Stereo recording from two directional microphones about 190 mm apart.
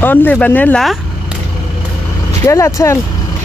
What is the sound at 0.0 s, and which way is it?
Speech, 10° left (ahead or behind).